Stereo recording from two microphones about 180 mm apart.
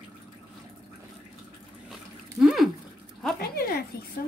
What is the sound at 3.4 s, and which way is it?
Speech, 60° left (ahead or behind).